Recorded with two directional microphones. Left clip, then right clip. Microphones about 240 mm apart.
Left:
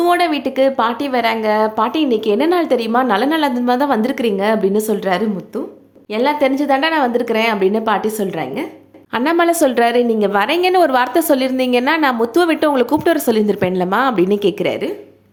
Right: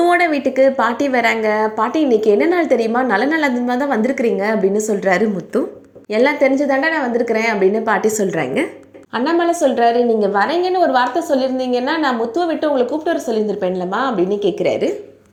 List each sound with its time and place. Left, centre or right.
0.0 s a woman's voice: centre
9.1 s a woman's voice: centre